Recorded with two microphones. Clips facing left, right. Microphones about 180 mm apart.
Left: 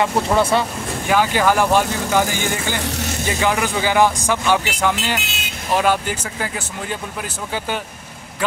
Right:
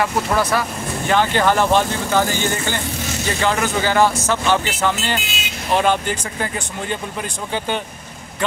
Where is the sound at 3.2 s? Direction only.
10° left (ahead or behind).